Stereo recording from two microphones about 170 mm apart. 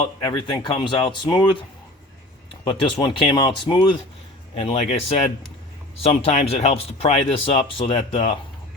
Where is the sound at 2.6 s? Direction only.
30° left (ahead or behind).